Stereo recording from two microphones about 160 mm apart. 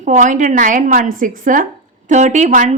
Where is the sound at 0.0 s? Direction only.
50° right (ahead or behind).